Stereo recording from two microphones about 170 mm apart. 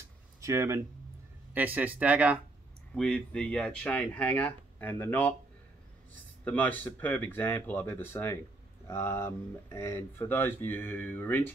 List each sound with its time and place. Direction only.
0.4 s speech: 15° right (ahead or behind)
2.9 s speech: 5° left (ahead or behind)
6.4 s speech: 10° left (ahead or behind)